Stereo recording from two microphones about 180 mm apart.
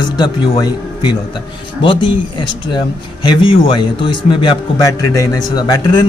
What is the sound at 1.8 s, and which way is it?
A man's voice, 25° left (ahead or behind).